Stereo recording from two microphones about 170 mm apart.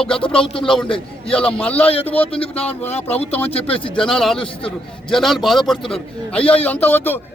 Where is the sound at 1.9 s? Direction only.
35° left (ahead or behind).